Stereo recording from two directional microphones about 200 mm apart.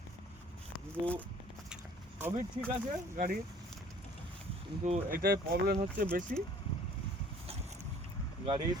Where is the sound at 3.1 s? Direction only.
40° right (ahead or behind).